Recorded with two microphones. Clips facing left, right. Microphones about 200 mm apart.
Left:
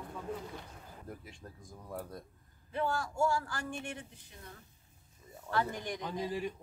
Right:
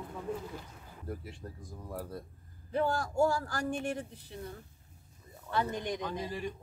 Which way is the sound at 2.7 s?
40° right (ahead or behind).